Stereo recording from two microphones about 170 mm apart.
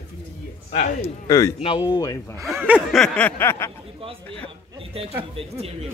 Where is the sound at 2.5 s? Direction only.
10° right (ahead or behind); by 3.7 s 15° left (ahead or behind).